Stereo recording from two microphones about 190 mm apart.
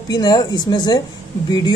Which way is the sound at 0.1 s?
20° left (ahead or behind).